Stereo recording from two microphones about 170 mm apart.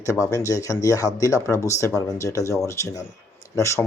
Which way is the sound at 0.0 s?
20° left (ahead or behind).